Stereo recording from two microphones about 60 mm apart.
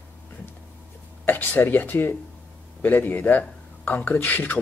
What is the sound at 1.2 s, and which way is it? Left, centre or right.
Speech, left.